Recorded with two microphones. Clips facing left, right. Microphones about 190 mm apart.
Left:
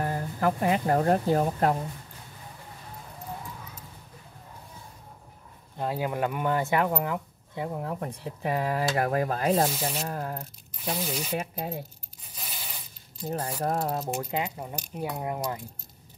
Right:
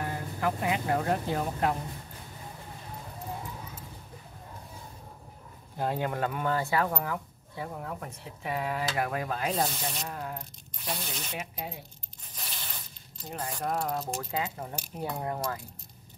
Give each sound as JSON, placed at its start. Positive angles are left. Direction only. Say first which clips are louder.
{"t": 0.0, "sound": "speech", "louder": "left 4 dB", "side_deg": 45}
{"t": 5.8, "sound": "speech", "louder": "left 1 dB", "side_deg": 5}
{"t": 8.0, "sound": "rub", "louder": "left 7 dB", "side_deg": 35}
{"t": 9.7, "sound": "speech", "louder": "left 5 dB", "side_deg": 5}
{"t": 10.0, "sound": "rub", "louder": "left 4 dB", "side_deg": 40}
{"t": 10.8, "sound": "speech", "louder": "left 6 dB", "side_deg": 5}
{"t": 12.4, "sound": "tearing", "louder": "left 1 dB", "side_deg": 5}
{"t": 13.2, "sound": "rub", "louder": "left 5 dB", "side_deg": 40}
{"t": 14.3, "sound": "speech", "louder": "left 2 dB", "side_deg": 15}